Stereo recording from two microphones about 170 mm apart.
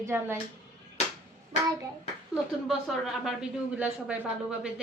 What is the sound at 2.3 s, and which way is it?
A woman's voice, centre (ahead or behind).